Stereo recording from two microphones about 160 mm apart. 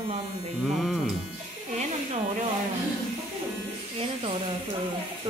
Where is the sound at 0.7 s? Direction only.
5° right (ahead or behind).